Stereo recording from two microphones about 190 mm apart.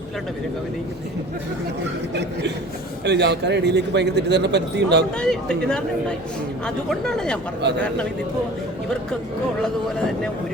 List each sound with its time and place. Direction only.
3.0 s speech: 65° right (ahead or behind)
5.2 s speech: 5° left (ahead or behind)